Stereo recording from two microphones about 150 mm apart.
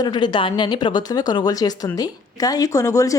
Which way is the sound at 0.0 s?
30° left (ahead or behind).